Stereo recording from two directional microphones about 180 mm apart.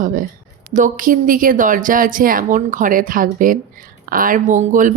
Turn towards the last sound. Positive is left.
turn(degrees=-45)  # may be behind; listen again after turning